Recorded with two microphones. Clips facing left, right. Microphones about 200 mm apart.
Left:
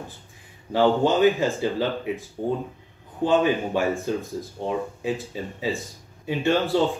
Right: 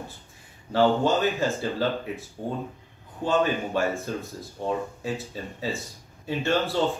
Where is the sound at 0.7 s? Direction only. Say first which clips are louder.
Left 2 dB; 15° left (ahead or behind).